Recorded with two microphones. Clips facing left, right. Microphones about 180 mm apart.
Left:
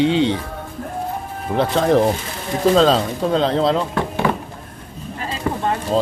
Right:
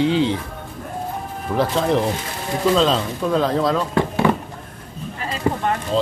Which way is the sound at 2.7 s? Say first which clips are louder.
Left 3 dB; 40° left (ahead or behind).